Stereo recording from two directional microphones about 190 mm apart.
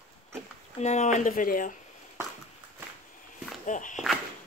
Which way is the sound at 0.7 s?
35° left (ahead or behind).